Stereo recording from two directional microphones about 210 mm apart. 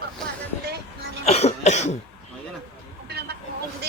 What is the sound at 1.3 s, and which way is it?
Cough, 30° left (ahead or behind).